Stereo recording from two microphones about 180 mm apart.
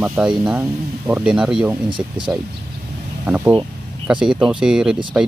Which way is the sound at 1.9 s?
25° right (ahead or behind).